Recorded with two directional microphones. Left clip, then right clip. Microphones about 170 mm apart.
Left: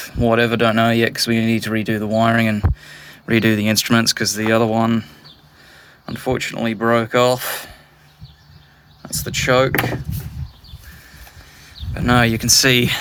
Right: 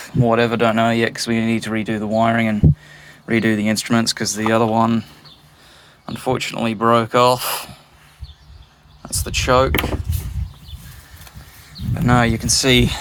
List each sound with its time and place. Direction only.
0.2 s speech: 90° left
4.0 s speech: 35° left (ahead or behind)
6.1 s speech: 15° left (ahead or behind)
9.0 s speech: 15° left (ahead or behind)
12.1 s speech: 40° left (ahead or behind)